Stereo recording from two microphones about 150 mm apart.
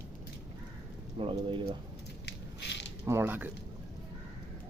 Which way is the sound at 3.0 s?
15° right (ahead or behind).